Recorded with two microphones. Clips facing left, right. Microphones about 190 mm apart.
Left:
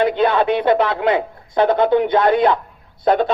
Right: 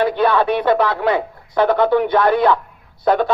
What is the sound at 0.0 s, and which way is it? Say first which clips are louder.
Speech: even; 20° left (ahead or behind).